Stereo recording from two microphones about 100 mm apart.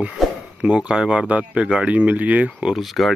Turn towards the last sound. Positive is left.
turn(degrees=0)  # may be behind; listen again after turning